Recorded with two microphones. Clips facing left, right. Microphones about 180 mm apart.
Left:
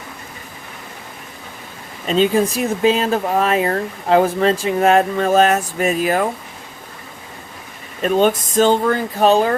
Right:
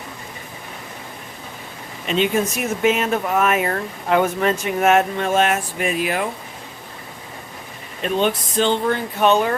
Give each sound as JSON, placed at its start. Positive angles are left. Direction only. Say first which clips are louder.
{"t": 2.0, "sound": "speech", "louder": "left 4 dB", "side_deg": 35}
{"t": 8.0, "sound": "speech", "louder": "left 5 dB", "side_deg": 45}